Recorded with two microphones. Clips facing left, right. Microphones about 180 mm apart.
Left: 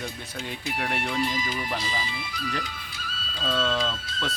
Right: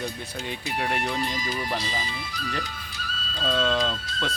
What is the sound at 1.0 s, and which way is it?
Speech, 35° right (ahead or behind).